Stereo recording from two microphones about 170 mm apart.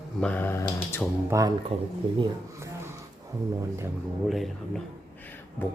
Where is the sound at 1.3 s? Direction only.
15° right (ahead or behind).